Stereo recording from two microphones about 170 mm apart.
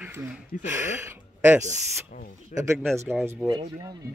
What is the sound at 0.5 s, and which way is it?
Speech, 50° left (ahead or behind).